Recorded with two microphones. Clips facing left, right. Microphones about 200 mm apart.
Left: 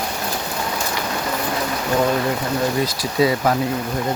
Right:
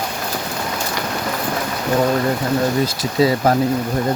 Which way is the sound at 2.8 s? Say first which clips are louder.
Right 2 dB; 30° right (ahead or behind).